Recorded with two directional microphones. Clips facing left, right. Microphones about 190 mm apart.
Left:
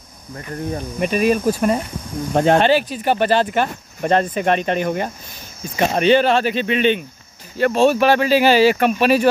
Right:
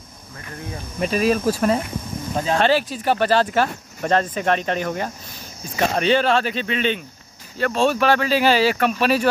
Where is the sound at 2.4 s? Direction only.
70° left (ahead or behind).